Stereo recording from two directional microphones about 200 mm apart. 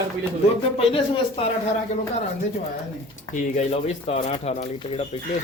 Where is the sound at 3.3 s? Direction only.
35° left (ahead or behind).